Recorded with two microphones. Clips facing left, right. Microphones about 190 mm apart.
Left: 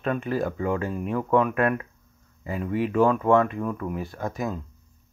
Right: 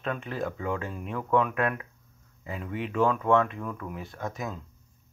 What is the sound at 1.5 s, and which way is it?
Speech, 55° left (ahead or behind).